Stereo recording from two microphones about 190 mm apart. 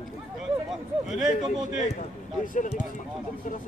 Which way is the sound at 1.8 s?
35° left (ahead or behind).